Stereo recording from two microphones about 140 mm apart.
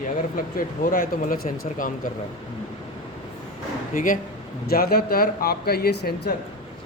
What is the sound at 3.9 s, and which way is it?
Speech, 70° left (ahead or behind).